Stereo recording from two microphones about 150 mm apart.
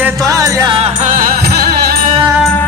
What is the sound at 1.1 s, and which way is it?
Music, 80° right.